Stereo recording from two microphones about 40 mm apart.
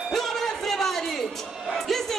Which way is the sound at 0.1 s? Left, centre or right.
Centre.